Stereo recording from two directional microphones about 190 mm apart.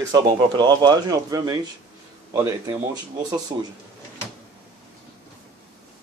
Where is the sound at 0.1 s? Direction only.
20° right (ahead or behind).